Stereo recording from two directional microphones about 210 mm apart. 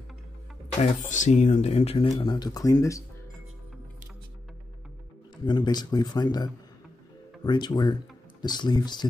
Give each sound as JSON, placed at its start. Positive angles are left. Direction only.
{"t": 1.0, "sound": "speech", "side_deg": 35}
{"t": 5.4, "sound": "speech", "side_deg": 20}